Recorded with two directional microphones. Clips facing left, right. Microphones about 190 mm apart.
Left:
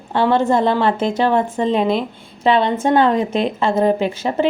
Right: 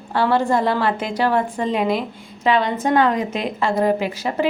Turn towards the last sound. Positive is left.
turn(degrees=25)  # may be behind; listen again after turning